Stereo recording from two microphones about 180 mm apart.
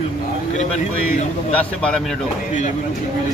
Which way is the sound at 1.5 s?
5° left (ahead or behind).